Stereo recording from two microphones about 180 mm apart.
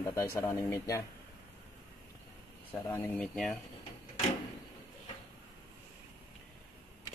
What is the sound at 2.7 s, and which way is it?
Speech, 15° left (ahead or behind).